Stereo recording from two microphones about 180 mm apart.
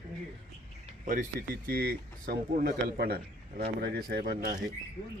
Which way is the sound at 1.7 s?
55° right (ahead or behind).